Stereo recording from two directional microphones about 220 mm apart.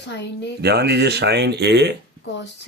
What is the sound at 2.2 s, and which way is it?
Speech, 50° left (ahead or behind).